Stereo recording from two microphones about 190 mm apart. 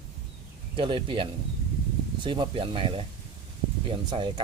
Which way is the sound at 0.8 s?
25° right (ahead or behind).